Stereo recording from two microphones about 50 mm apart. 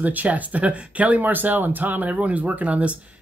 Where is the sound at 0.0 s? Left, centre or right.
Right.